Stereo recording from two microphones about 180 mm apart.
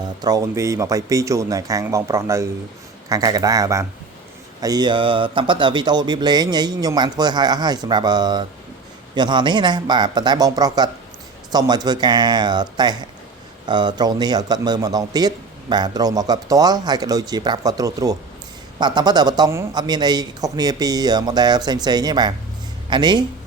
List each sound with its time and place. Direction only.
0.2 s speech: 20° right (ahead or behind)